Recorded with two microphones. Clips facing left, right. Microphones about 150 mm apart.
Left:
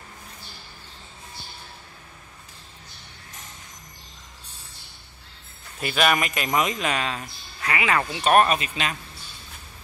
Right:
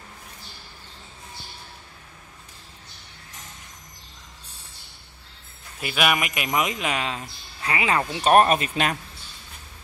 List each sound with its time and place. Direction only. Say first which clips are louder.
5.8 s a man's voice: left 1 dB; 5° right (ahead or behind); by 8.9 s 45° right (ahead or behind)